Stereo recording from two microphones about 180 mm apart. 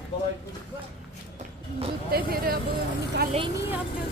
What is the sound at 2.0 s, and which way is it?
Speech, 55° right (ahead or behind).